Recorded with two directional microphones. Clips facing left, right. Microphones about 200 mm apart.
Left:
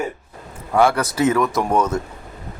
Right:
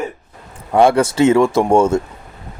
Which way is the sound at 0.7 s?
30° right (ahead or behind).